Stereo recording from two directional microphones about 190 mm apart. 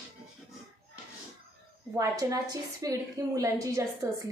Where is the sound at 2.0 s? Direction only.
20° right (ahead or behind).